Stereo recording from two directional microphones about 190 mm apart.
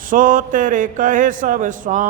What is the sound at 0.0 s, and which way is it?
A man's voice, 45° right (ahead or behind).